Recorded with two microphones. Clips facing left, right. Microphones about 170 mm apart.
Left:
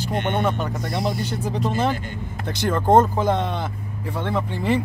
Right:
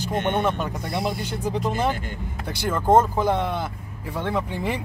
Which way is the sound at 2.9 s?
10° right (ahead or behind).